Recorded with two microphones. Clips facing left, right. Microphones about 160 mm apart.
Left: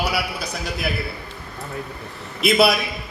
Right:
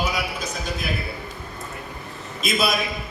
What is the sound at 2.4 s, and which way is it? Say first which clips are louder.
Speech: left 6 dB; 70° left (ahead or behind).